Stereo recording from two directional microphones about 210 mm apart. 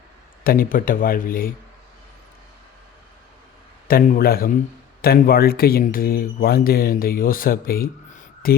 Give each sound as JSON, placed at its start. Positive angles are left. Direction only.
{"t": 0.4, "sound": "speech", "side_deg": 45}
{"t": 3.8, "sound": "speech", "side_deg": 45}